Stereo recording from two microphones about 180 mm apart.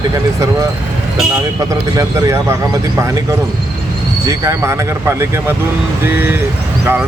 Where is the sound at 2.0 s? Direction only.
15° right (ahead or behind).